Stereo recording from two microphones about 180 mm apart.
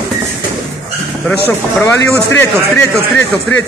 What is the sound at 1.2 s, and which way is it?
Speech, 10° left (ahead or behind).